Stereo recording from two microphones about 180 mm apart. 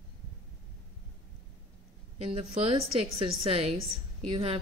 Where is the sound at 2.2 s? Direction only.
30° right (ahead or behind).